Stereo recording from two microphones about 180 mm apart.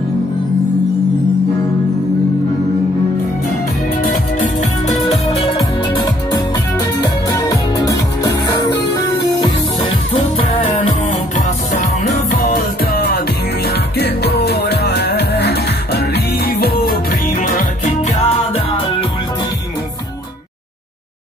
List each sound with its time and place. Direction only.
4.0 s music: 40° left (ahead or behind)
7.0 s music: 20° left (ahead or behind)
11.1 s music: 45° left (ahead or behind)
12.9 s music: 55° left (ahead or behind)